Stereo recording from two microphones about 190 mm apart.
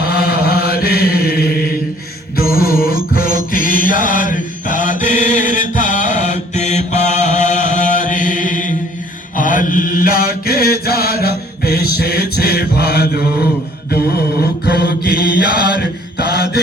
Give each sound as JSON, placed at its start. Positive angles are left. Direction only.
{"t": 0.0, "sound": "mantra", "side_deg": 55}
{"t": 2.3, "sound": "music", "side_deg": 50}
{"t": 9.4, "sound": "mantra", "side_deg": 45}